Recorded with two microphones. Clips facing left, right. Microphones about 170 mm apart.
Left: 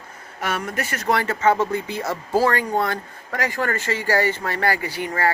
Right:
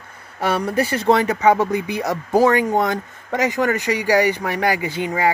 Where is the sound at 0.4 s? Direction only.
30° right (ahead or behind).